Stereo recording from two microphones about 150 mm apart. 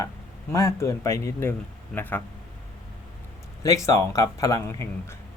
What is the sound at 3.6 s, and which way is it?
Speech, 20° left (ahead or behind).